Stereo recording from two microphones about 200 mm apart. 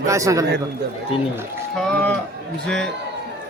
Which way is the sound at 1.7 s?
5° left (ahead or behind).